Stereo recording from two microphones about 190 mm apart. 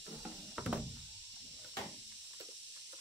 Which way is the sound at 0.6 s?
5° right (ahead or behind).